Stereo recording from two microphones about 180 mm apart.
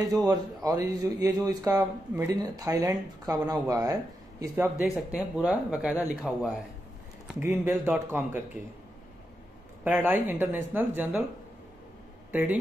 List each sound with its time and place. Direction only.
0.7 s speech: 20° right (ahead or behind)
4.6 s speech: 5° right (ahead or behind)
9.8 s speech: 10° right (ahead or behind)
12.3 s speech: 10° right (ahead or behind)